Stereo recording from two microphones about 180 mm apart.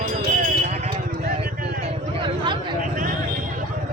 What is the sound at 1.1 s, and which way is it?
Vehicle, 55° right (ahead or behind).